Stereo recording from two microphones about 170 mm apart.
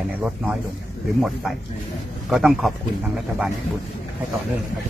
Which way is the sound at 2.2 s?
Centre (ahead or behind).